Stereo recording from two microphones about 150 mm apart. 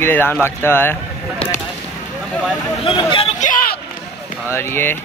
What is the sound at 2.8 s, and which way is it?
Speech, 35° left (ahead or behind).